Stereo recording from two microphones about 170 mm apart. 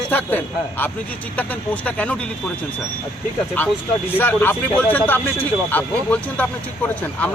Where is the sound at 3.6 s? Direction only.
10° left (ahead or behind).